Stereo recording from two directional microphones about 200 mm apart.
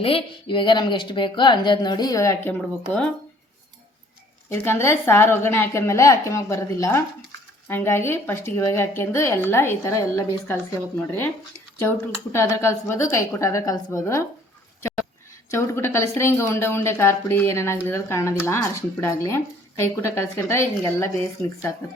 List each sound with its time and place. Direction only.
0.0 s speech: 25° left (ahead or behind); by 3.1 s 5° left (ahead or behind)
4.4 s a woman's voice: 10° left (ahead or behind)
12.3 s a woman's voice: 15° left (ahead or behind)
15.4 s a woman's voice: 10° left (ahead or behind)